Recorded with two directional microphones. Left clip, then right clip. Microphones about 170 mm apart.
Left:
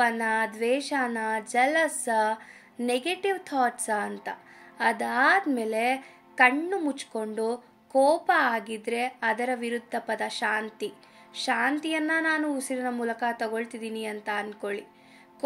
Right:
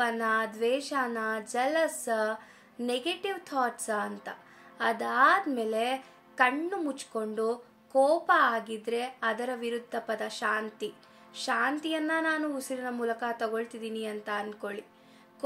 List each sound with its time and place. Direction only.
0.0 s speech: 25° left (ahead or behind)